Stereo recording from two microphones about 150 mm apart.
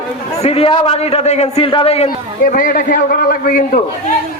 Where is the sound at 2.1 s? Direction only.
75° left (ahead or behind).